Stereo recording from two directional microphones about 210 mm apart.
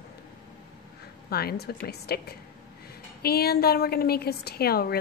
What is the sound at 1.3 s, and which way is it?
A woman's voice, 50° left (ahead or behind).